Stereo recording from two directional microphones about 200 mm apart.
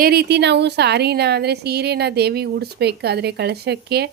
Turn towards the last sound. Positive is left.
turn(degrees=-55)  # may be behind; listen again after turning